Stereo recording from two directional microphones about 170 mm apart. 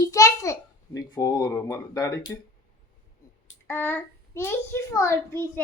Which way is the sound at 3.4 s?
15° left (ahead or behind).